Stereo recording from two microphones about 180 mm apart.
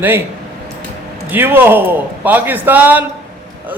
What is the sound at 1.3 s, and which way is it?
A man's voice, 10° right (ahead or behind).